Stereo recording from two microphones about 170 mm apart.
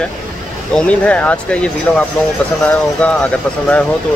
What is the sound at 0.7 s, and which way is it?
Speech, 5° left (ahead or behind).